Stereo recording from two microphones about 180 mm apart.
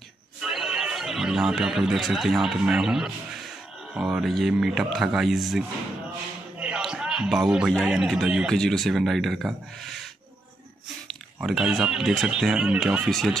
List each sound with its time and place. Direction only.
0.4 s speech: 5° right (ahead or behind)
11.4 s speech: centre (ahead or behind)